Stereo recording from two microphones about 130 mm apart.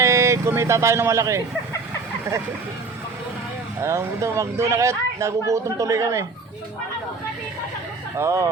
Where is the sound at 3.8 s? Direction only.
20° right (ahead or behind).